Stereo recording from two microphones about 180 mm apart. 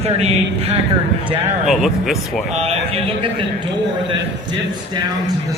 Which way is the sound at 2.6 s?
35° right (ahead or behind).